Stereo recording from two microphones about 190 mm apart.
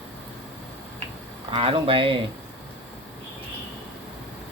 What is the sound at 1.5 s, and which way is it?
Speech, 25° right (ahead or behind).